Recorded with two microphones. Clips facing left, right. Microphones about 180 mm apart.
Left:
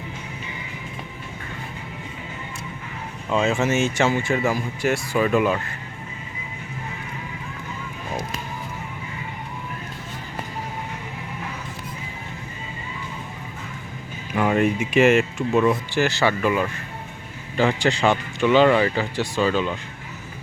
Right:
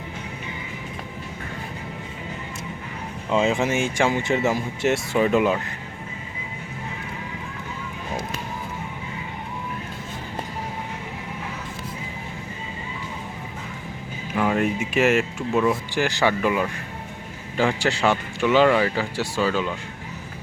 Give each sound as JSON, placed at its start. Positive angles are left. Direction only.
{"t": 3.2, "sound": "speech", "side_deg": -20}
{"t": 14.3, "sound": "speech", "side_deg": 0}
{"t": 16.0, "sound": "speech", "side_deg": -15}